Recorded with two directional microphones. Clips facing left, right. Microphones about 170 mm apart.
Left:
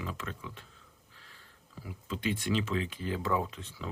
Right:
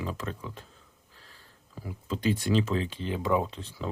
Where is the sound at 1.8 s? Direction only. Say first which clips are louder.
Right 5 dB; 35° right (ahead or behind).